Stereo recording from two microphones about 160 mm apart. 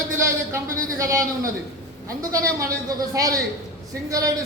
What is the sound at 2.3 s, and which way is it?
A woman's voice, 20° right (ahead or behind).